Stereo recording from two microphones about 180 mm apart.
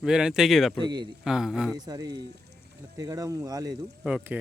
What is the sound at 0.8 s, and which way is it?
Speech, 25° right (ahead or behind).